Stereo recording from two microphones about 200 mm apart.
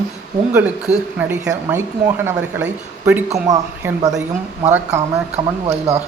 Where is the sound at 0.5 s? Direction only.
10° right (ahead or behind).